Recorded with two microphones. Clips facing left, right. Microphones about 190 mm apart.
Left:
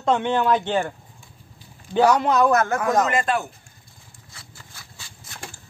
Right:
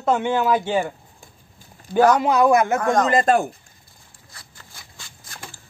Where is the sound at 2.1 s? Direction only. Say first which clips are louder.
Right 2 dB; 10° right (ahead or behind).